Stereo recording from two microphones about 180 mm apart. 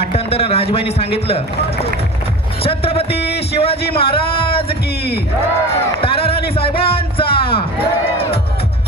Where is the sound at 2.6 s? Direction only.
30° left (ahead or behind).